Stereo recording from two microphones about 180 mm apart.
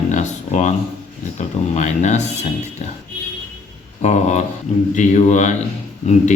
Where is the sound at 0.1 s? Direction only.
40° left (ahead or behind).